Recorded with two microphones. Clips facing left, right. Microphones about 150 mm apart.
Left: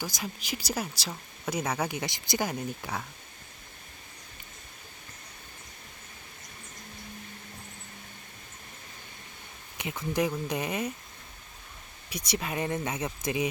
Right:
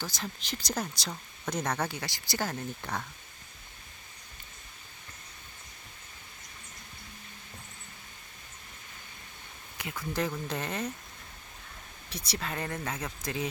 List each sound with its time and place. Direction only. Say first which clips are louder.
0.0 s speech: left 2 dB; 10° left (ahead or behind)
9.7 s speech: left 4 dB; 20° left (ahead or behind)
12.0 s speech: left 4 dB; 15° left (ahead or behind)